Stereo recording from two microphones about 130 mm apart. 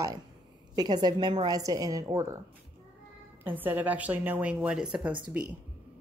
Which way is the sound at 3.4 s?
15° right (ahead or behind).